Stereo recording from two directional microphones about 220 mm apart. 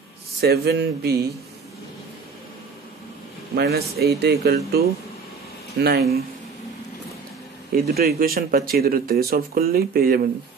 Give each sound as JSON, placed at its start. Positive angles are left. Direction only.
{"t": 0.4, "sound": "speech", "side_deg": -45}
{"t": 3.5, "sound": "speech", "side_deg": -45}
{"t": 5.8, "sound": "speech", "side_deg": -45}
{"t": 7.7, "sound": "speech", "side_deg": -45}